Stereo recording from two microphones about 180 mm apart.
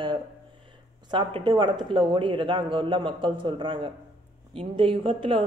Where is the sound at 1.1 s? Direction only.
25° right (ahead or behind).